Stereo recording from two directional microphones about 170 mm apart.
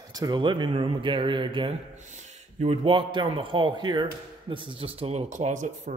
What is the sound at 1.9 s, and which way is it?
A man's voice, 45° right (ahead or behind).